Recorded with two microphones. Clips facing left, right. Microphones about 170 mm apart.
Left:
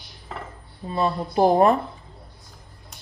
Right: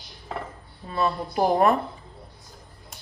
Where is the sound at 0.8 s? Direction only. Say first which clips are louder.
Left 2 dB; 25° left (ahead or behind).